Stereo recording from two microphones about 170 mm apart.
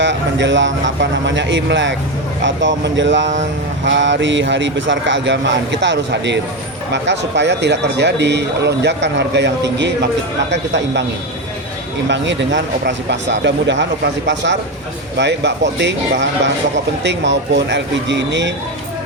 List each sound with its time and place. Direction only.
0.0 s speech: 90° right
12.0 s speech: 90° right